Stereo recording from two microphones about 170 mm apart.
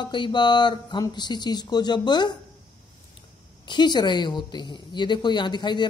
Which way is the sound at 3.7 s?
25° left (ahead or behind).